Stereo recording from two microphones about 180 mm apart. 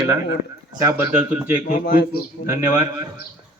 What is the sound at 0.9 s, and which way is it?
Speech, 10° right (ahead or behind).